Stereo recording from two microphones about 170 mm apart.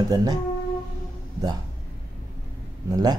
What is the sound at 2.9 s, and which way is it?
Speech, 20° right (ahead or behind).